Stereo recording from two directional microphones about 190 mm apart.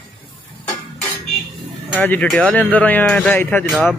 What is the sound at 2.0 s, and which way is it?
Speech, 10° left (ahead or behind).